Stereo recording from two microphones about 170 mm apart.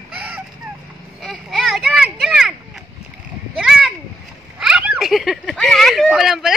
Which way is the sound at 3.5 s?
Centre (ahead or behind).